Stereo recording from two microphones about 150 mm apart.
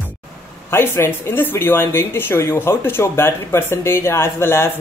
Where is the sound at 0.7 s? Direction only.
15° left (ahead or behind).